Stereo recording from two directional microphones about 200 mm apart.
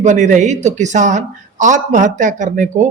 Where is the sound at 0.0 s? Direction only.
35° right (ahead or behind).